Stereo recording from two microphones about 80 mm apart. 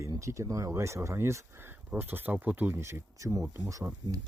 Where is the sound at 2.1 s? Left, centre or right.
Right.